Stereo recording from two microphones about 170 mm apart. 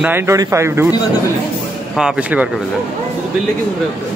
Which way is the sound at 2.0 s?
5° right (ahead or behind).